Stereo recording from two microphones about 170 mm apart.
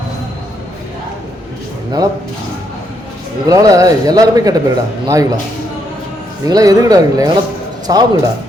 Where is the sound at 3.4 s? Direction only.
20° right (ahead or behind).